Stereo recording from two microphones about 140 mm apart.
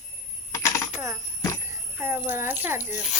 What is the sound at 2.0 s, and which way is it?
Speech, 15° right (ahead or behind).